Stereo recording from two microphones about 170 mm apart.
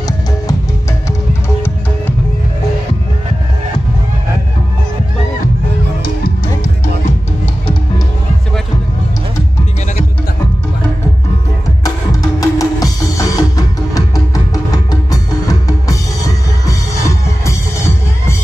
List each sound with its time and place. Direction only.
6.2 s music: 50° left (ahead or behind)
11.8 s music: 20° left (ahead or behind)